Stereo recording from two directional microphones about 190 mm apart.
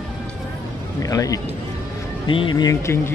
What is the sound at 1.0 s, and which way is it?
A man's voice, 20° left (ahead or behind).